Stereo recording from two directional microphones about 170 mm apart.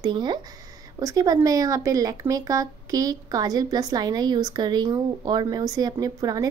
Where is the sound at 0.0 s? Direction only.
25° right (ahead or behind).